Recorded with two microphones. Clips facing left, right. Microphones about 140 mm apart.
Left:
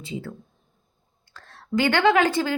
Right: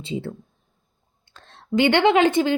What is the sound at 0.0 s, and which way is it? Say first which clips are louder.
A woman's voice: right 4 dB; 25° right (ahead or behind).